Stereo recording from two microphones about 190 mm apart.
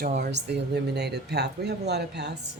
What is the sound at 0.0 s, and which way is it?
Speech, 60° right (ahead or behind).